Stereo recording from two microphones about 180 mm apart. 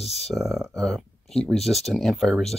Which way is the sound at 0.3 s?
Centre (ahead or behind).